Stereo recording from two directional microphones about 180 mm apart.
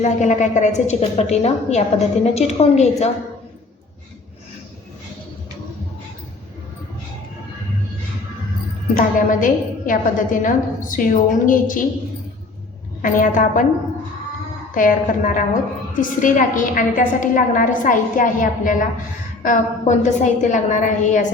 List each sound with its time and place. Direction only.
0.0 s a woman's voice: 40° left (ahead or behind)
9.0 s a woman's voice: 50° left (ahead or behind)
13.0 s a woman's voice: 45° left (ahead or behind)
14.8 s a woman's voice: 50° left (ahead or behind)